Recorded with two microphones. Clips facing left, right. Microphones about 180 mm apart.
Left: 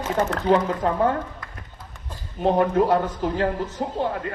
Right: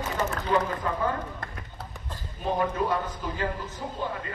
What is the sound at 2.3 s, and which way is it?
A woman's voice, 70° left (ahead or behind).